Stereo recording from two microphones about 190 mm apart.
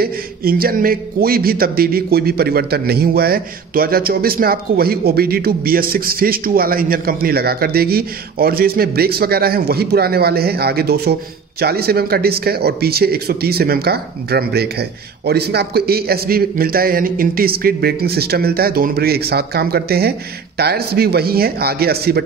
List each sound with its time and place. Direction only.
0.0 s a man's voice: 50° right (ahead or behind)